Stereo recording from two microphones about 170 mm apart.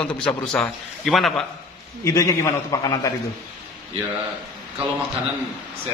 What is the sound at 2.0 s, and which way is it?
A man's voice, 20° left (ahead or behind).